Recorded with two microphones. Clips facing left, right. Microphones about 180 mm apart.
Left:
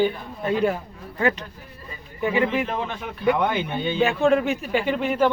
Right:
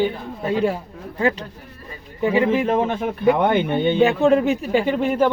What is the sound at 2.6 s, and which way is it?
Speech, 45° right (ahead or behind).